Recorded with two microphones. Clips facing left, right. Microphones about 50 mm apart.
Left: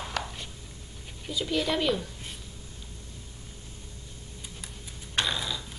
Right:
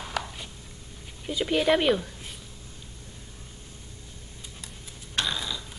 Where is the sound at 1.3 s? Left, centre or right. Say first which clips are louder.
Right 5 dB; right.